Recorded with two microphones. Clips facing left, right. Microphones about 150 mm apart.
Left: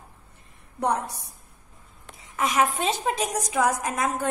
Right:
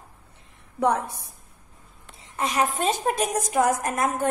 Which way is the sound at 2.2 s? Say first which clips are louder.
Left 1 dB; 30° right (ahead or behind).